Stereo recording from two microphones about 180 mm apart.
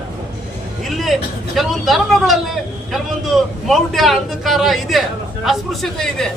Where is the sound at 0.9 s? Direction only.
Centre (ahead or behind).